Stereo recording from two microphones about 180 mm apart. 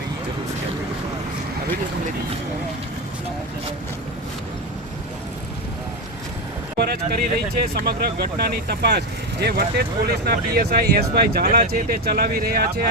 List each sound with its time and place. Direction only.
6.7 s speech: 60° right (ahead or behind)